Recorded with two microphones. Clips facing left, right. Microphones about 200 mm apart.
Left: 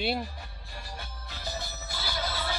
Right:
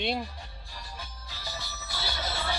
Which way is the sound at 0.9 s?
60° left (ahead or behind).